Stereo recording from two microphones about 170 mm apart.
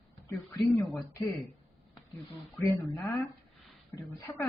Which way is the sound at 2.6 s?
15° left (ahead or behind).